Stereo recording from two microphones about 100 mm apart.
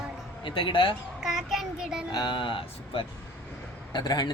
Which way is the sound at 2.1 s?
45° left (ahead or behind).